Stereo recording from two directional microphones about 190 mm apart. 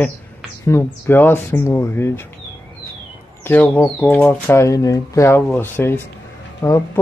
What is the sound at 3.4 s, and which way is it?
Speech, 10° left (ahead or behind).